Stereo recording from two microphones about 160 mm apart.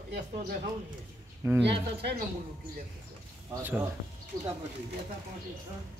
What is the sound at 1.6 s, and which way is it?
Speech, 90° right.